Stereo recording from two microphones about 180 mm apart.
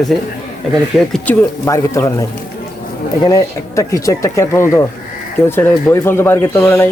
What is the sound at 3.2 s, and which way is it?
Speech, 20° left (ahead or behind).